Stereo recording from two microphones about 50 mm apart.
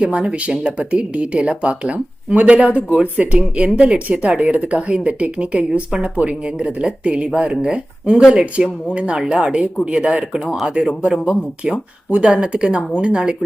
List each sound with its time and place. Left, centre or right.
0.0 s speech: right